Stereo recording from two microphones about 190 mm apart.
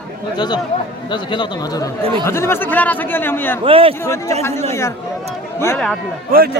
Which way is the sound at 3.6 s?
30° right (ahead or behind).